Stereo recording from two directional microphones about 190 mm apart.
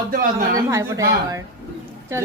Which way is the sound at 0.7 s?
15° right (ahead or behind).